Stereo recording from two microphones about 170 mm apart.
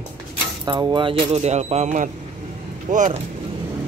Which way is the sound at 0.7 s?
25° right (ahead or behind).